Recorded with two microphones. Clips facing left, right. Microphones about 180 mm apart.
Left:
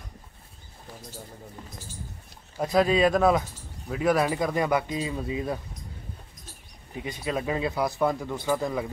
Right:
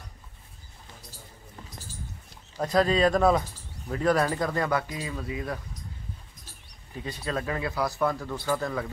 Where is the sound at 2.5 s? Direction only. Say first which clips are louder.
Left 1 dB; 10° left (ahead or behind).